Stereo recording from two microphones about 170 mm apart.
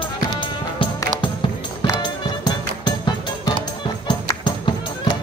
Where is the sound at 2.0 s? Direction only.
25° left (ahead or behind).